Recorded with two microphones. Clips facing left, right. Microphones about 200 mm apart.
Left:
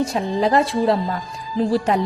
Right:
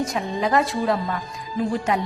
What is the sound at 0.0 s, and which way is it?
Speech, 30° left (ahead or behind).